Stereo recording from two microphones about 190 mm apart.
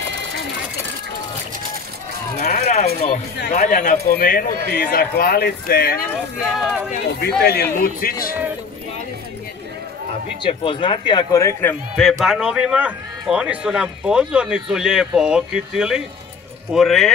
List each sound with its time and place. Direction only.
2.3 s a sound: 45° left (ahead or behind)
3.3 s speech: 50° left (ahead or behind)
6.3 s a man's voice: centre (ahead or behind)
7.2 s a man's voice: 55° left (ahead or behind)
10.4 s speech: 25° left (ahead or behind)
11.9 s a man's voice: centre (ahead or behind)